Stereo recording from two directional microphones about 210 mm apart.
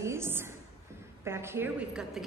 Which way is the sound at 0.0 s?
10° right (ahead or behind).